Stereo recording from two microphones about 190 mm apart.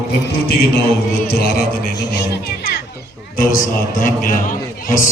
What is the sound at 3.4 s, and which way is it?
A man's voice, 45° left (ahead or behind).